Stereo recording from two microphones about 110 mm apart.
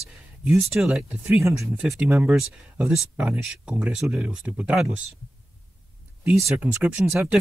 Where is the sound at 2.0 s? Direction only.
15° right (ahead or behind).